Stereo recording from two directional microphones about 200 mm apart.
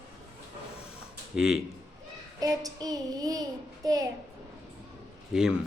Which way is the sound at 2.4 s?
20° right (ahead or behind).